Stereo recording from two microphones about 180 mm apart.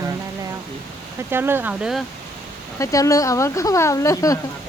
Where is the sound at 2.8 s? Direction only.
20° left (ahead or behind).